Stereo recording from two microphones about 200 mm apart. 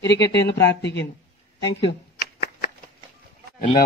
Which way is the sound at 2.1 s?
45° left (ahead or behind).